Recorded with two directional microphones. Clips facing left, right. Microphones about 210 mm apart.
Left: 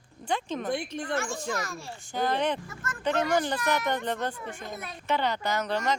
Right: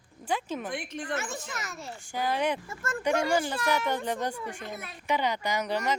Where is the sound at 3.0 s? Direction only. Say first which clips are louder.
Even; 10° right (ahead or behind).